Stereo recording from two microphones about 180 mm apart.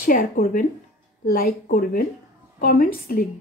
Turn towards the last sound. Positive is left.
turn(degrees=55)  # may be behind; listen again after turning